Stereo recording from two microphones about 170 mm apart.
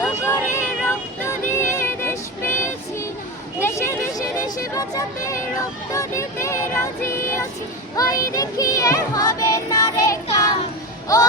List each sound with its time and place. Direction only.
0.2 s music: 15° left (ahead or behind)
3.6 s a sound: 15° left (ahead or behind)
5.9 s child singing: 15° left (ahead or behind)